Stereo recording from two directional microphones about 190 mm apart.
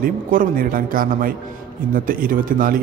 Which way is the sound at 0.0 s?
50° right (ahead or behind).